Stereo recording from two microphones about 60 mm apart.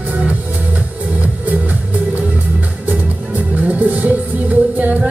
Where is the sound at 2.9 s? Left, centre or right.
Right.